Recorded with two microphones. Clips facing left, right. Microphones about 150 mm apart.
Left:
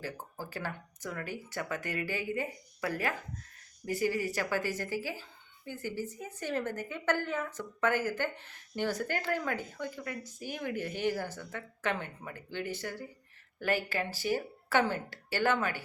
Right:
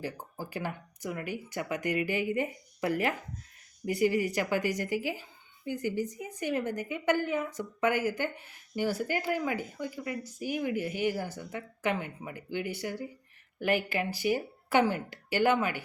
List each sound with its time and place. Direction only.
0.0 s speech: 15° right (ahead or behind)